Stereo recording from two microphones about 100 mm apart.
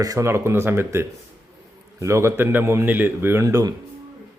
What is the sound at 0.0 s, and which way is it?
Speech, 35° right (ahead or behind).